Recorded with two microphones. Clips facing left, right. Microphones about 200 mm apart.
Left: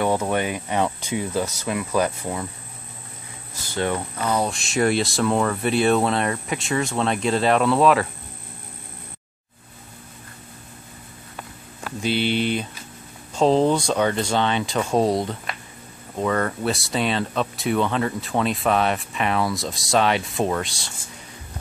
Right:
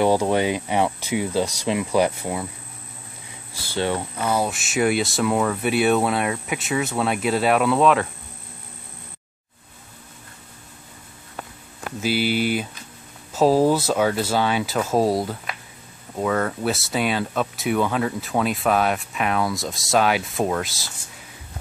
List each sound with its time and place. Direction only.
0.0 s speech: 15° right (ahead or behind)
3.8 s speech: 10° right (ahead or behind)
12.0 s speech: 5° right (ahead or behind)